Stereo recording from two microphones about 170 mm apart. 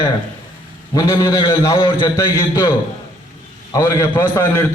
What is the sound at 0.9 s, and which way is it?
A man's voice, 20° left (ahead or behind).